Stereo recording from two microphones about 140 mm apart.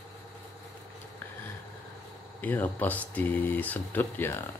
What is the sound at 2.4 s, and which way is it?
Speech, 15° left (ahead or behind).